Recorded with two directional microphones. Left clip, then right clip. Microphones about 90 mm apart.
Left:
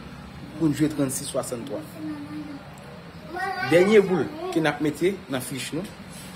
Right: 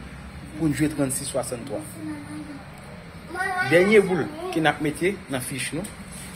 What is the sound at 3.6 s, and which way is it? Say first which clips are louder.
Speech: even; 40° left (ahead or behind).